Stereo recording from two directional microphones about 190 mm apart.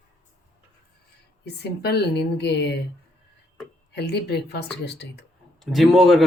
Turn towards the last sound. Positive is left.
turn(degrees=0)  # may be behind; listen again after turning